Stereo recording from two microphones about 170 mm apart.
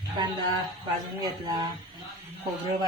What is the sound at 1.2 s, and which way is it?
Speech, 25° right (ahead or behind).